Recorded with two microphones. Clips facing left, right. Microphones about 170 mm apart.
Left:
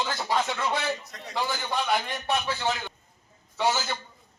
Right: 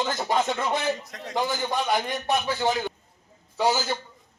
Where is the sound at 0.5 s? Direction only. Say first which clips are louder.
Right 2 dB; 20° right (ahead or behind).